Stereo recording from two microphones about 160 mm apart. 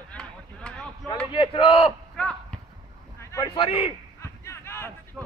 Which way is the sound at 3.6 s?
35° left (ahead or behind).